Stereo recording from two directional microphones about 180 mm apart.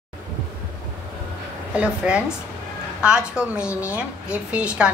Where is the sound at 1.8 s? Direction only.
5° right (ahead or behind).